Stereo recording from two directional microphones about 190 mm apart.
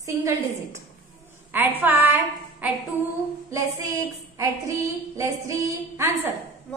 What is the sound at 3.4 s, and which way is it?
Child singing, 15° right (ahead or behind).